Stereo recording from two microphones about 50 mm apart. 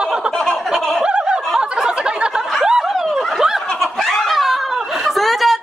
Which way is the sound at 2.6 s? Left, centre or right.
Centre.